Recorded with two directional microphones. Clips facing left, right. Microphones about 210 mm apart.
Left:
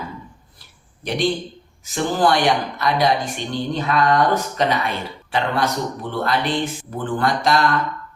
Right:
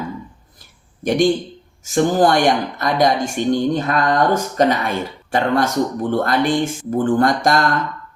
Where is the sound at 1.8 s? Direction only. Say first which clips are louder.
Right 4 dB; 45° right (ahead or behind).